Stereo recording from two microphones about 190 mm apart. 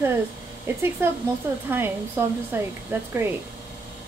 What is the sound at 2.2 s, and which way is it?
Speech, 10° right (ahead or behind).